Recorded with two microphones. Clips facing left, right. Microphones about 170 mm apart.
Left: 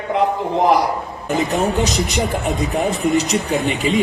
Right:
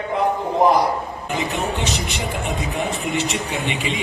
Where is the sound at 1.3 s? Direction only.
40° left (ahead or behind).